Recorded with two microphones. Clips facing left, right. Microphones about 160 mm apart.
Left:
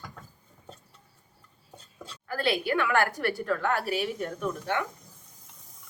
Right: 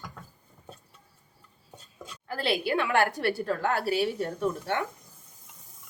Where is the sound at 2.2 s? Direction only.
25° right (ahead or behind).